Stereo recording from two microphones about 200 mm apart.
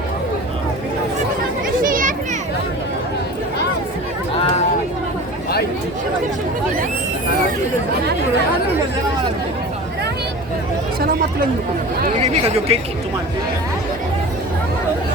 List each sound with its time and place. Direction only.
1.8 s children playing: 45° right (ahead or behind)
12.0 s chatter: 35° right (ahead or behind)